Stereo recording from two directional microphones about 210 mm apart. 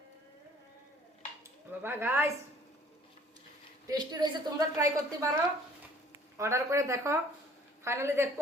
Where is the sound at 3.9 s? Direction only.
20° right (ahead or behind).